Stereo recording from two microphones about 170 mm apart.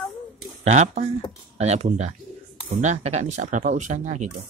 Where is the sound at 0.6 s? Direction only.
40° right (ahead or behind).